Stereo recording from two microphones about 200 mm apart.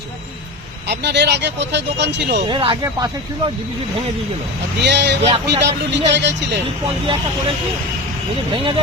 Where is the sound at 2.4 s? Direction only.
25° right (ahead or behind).